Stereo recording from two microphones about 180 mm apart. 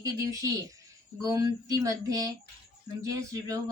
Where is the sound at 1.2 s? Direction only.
20° right (ahead or behind).